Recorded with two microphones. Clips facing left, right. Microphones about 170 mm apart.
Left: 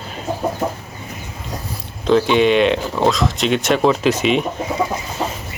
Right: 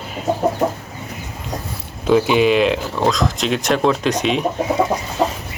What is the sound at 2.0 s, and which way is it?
Speech, 5° right (ahead or behind).